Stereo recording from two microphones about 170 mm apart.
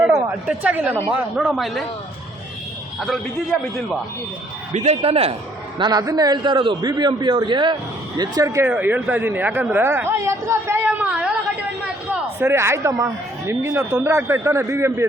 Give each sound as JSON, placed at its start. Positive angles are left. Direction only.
{"t": 0.0, "sound": "a sound", "side_deg": -15}
{"t": 0.4, "sound": "a man's voice", "side_deg": -10}
{"t": 3.0, "sound": "a man's voice", "side_deg": 0}
{"t": 4.7, "sound": "speech", "side_deg": -40}
{"t": 5.8, "sound": "a man's voice", "side_deg": -20}